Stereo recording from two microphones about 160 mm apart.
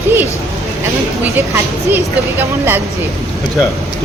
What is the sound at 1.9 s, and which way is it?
Speech, 15° right (ahead or behind).